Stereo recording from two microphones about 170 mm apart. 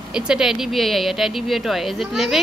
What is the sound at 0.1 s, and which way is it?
Speech, 5° right (ahead or behind).